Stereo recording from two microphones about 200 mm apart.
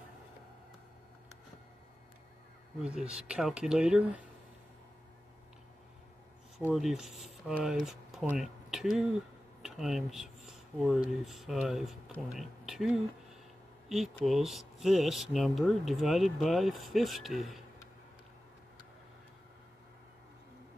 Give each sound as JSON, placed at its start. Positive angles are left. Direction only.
{"t": 2.8, "sound": "speech", "side_deg": -5}
{"t": 6.7, "sound": "speech", "side_deg": 0}
{"t": 9.6, "sound": "a sound", "side_deg": 0}
{"t": 11.2, "sound": "speech", "side_deg": 0}